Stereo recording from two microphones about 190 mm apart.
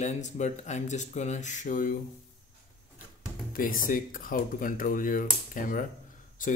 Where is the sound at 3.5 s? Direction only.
45° left (ahead or behind).